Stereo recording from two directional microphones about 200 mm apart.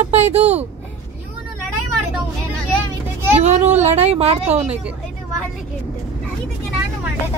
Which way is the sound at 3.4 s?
35° right (ahead or behind).